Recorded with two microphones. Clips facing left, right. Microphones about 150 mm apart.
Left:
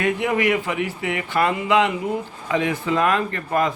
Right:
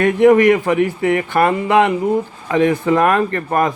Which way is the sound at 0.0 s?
50° right (ahead or behind).